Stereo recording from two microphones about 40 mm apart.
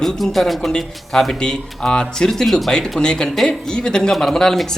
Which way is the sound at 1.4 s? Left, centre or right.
Centre.